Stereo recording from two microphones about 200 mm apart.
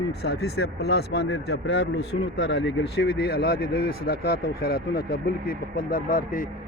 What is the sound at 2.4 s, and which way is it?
Speech, 60° left (ahead or behind).